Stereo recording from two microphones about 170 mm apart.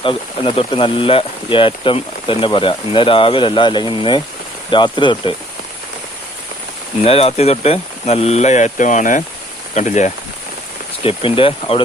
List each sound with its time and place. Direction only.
0.0 s speech: 30° left (ahead or behind)
7.0 s speech: 35° left (ahead or behind)
11.0 s speech: 30° left (ahead or behind)